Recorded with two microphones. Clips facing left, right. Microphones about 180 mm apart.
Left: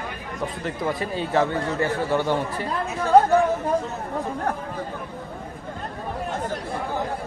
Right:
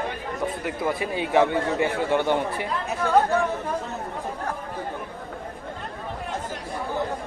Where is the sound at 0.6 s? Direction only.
10° right (ahead or behind).